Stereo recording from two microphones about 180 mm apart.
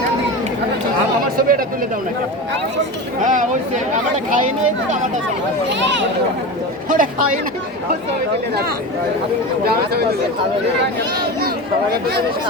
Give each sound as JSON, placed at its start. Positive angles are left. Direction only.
{"t": 1.4, "sound": "chatter", "side_deg": -50}
{"t": 3.2, "sound": "speech", "side_deg": -45}
{"t": 5.6, "sound": "speech", "side_deg": -85}
{"t": 6.8, "sound": "a sound", "side_deg": -50}
{"t": 11.4, "sound": "speech", "side_deg": -60}